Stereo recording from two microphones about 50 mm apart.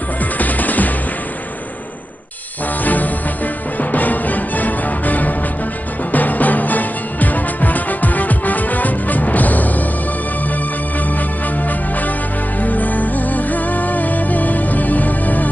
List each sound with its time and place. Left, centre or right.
0.4 s music: left
2.8 s music: left
12.5 s music: left